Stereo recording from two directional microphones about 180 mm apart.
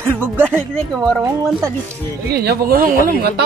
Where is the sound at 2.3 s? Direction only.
60° right (ahead or behind).